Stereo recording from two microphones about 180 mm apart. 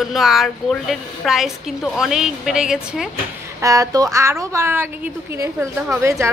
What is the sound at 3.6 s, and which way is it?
Speech, 20° right (ahead or behind).